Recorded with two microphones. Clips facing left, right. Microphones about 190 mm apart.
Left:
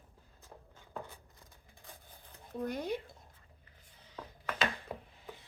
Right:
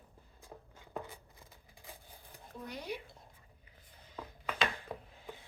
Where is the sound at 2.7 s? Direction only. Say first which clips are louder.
Left 6 dB; 50° left (ahead or behind).